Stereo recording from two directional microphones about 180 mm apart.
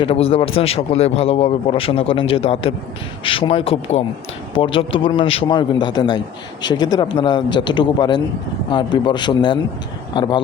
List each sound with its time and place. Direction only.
0.0 s a man's voice: 30° left (ahead or behind)